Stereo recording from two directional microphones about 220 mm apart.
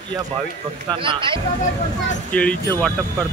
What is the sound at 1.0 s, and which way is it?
Speech, 25° right (ahead or behind).